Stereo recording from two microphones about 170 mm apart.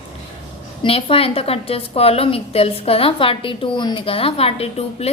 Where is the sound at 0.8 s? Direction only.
35° left (ahead or behind).